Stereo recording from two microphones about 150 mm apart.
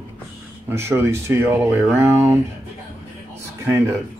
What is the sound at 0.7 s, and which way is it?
Speech, 15° right (ahead or behind).